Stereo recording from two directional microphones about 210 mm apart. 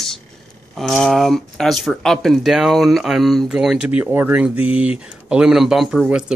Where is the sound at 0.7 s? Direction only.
Centre (ahead or behind).